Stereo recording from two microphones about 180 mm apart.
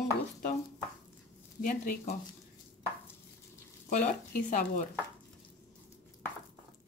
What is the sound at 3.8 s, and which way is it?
Speech, 50° left (ahead or behind).